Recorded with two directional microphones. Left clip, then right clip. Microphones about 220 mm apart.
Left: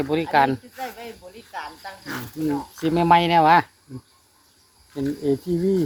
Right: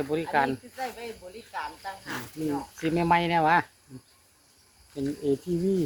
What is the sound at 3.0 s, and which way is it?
Speech, 35° left (ahead or behind).